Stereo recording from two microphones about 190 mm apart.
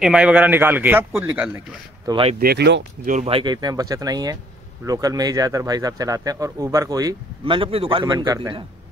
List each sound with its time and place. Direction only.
0.0 s a man's voice: 5° right (ahead or behind)
2.0 s speech: 30° right (ahead or behind)
2.3 s speech: 55° right (ahead or behind)
3.1 s speech: 35° right (ahead or behind)